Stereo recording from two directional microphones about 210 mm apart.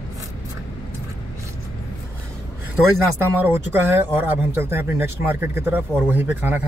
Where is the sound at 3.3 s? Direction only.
5° right (ahead or behind).